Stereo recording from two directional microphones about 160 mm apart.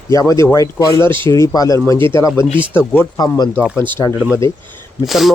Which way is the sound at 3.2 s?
25° left (ahead or behind).